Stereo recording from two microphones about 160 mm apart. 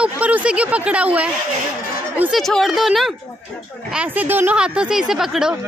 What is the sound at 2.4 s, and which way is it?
Speech, centre (ahead or behind).